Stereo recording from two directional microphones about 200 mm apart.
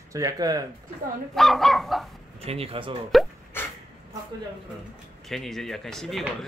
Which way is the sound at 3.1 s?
Centre (ahead or behind).